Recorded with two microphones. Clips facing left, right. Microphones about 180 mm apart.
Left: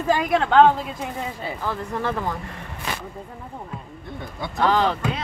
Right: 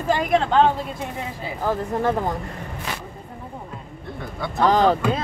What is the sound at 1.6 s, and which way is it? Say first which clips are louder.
Speech: right 6 dB; 40° right (ahead or behind).